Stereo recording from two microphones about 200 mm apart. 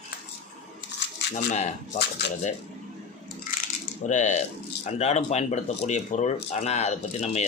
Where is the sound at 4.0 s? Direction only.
35° left (ahead or behind).